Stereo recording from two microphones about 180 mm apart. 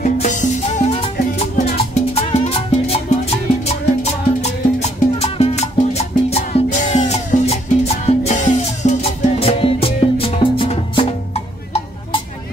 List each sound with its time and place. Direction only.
0.0 s music: 45° left (ahead or behind)